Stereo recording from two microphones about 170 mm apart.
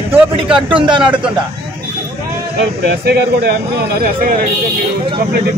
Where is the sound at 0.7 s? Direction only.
30° right (ahead or behind).